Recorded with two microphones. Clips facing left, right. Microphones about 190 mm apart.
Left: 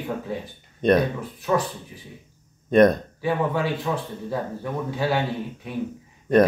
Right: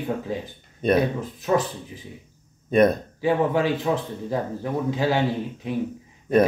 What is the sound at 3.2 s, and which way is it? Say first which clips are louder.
A man's voice: right 3 dB; 15° right (ahead or behind).